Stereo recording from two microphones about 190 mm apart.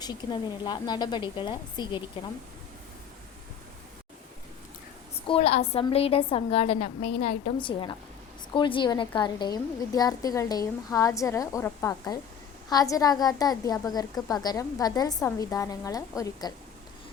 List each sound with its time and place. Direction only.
0.0 s a woman's voice: 20° left (ahead or behind)
5.3 s a woman's voice: 35° left (ahead or behind); by 16.5 s 20° left (ahead or behind)